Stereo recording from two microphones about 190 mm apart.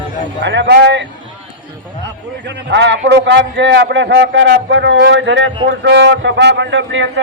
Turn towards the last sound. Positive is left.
turn(degrees=-75)  # may be behind; listen again after turning